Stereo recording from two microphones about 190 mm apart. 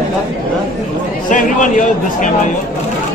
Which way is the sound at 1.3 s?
45° left (ahead or behind).